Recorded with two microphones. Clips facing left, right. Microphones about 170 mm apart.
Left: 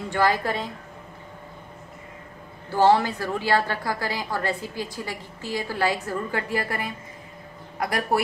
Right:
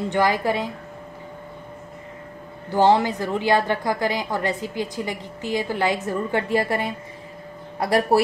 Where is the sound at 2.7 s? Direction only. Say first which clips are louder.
Right 2 dB; 20° right (ahead or behind).